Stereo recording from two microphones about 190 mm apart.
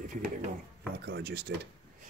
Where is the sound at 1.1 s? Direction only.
60° right (ahead or behind).